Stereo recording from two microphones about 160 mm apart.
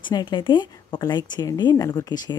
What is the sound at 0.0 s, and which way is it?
Speech, 25° left (ahead or behind).